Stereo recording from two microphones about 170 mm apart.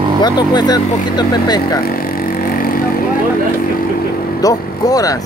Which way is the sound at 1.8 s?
60° left (ahead or behind).